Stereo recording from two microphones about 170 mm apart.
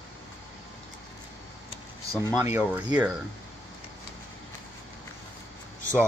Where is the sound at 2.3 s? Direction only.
15° right (ahead or behind).